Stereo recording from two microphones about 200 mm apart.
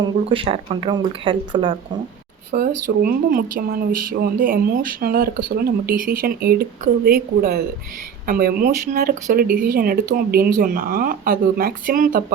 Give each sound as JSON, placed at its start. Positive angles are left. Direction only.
{"t": 0.3, "sound": "speech", "side_deg": -25}
{"t": 2.6, "sound": "speech", "side_deg": -45}